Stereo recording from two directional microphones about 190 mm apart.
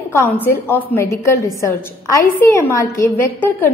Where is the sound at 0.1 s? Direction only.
10° left (ahead or behind).